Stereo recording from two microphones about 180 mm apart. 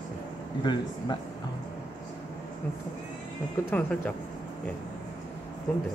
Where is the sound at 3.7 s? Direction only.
10° left (ahead or behind).